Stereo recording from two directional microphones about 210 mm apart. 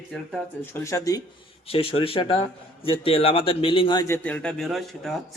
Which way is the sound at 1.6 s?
25° left (ahead or behind).